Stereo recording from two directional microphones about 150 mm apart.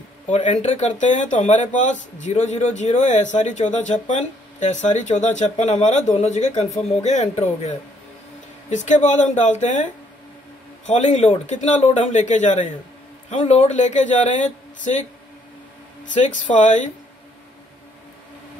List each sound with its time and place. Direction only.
0.3 s speech: 50° left (ahead or behind)
10.9 s speech: 50° left (ahead or behind)
16.4 s speech: 55° left (ahead or behind)